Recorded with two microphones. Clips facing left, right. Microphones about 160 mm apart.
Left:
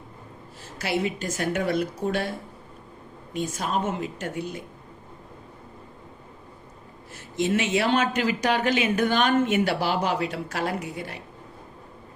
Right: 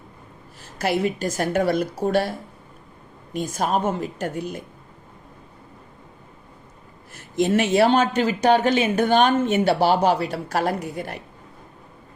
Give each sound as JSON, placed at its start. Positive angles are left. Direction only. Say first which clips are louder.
{"t": 0.8, "sound": "speech", "louder": "right 4 dB", "side_deg": -45}
{"t": 3.3, "sound": "a woman's voice", "louder": "right 4 dB", "side_deg": -45}
{"t": 7.1, "sound": "speech", "louder": "right 4 dB", "side_deg": -45}